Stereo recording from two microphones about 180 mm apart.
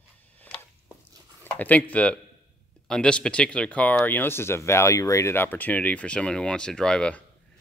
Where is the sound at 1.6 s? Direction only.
10° left (ahead or behind).